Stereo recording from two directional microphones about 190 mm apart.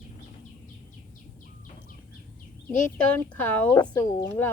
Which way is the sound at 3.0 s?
5° left (ahead or behind).